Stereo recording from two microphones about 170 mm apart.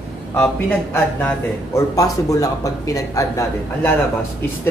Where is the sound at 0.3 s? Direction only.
10° left (ahead or behind).